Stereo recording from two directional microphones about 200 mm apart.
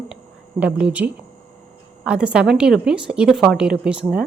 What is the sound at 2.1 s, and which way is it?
Speech, 5° right (ahead or behind).